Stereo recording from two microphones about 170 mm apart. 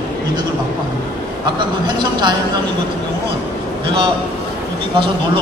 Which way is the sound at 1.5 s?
25° right (ahead or behind).